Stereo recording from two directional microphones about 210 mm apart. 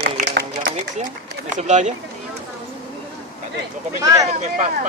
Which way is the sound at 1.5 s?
35° right (ahead or behind).